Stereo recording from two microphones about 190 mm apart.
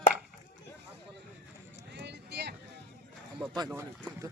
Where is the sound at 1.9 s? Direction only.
65° right (ahead or behind).